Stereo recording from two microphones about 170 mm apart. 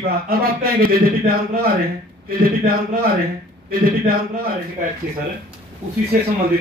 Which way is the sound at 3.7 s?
60° right (ahead or behind).